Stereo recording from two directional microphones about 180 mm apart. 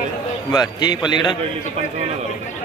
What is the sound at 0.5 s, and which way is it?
Speech, 20° left (ahead or behind).